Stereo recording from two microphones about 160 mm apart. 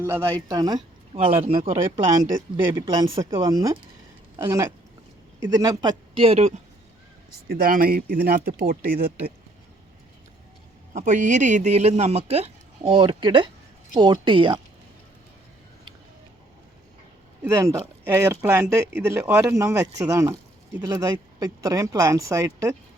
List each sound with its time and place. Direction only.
0.0 s speech: 15° right (ahead or behind)
1.1 s speech: 35° right (ahead or behind)
7.4 s speech: 70° right (ahead or behind)
10.9 s speech: 50° right (ahead or behind); by 14.6 s 30° right (ahead or behind)
17.4 s speech: 15° right (ahead or behind)